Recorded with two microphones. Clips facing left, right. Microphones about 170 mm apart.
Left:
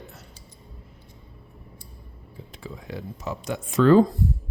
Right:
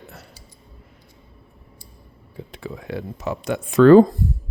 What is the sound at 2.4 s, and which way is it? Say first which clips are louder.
Speech: right 6 dB; 65° right (ahead or behind).